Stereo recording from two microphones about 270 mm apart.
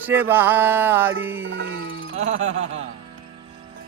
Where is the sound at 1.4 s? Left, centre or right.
Right.